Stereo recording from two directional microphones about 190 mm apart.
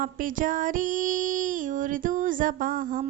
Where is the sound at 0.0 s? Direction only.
45° right (ahead or behind).